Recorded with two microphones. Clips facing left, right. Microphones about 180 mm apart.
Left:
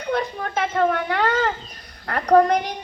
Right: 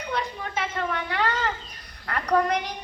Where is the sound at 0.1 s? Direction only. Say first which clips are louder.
Left 7 dB; 55° left (ahead or behind).